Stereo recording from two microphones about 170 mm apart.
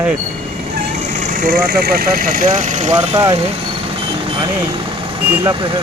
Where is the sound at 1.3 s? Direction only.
60° right (ahead or behind).